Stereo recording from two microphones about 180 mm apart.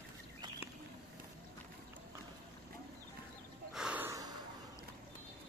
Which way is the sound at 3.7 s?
5° right (ahead or behind).